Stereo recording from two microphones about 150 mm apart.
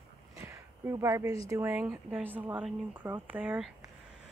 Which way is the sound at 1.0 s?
20° right (ahead or behind).